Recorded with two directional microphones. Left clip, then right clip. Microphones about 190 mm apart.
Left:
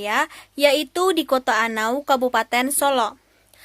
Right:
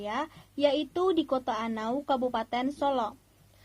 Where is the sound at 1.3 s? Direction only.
15° left (ahead or behind).